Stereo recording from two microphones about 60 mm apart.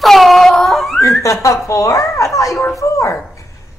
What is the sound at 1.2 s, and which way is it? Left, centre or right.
A child's voice, left.